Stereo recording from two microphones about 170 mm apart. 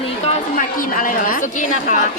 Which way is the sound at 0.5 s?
50° left (ahead or behind).